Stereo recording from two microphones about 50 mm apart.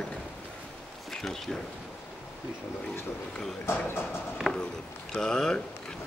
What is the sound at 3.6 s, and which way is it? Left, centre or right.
Speech, left.